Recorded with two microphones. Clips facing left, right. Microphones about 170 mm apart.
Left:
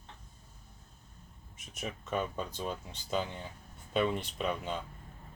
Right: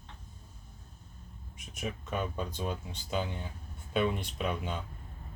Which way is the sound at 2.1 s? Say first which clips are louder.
Left 2 dB; 5° right (ahead or behind).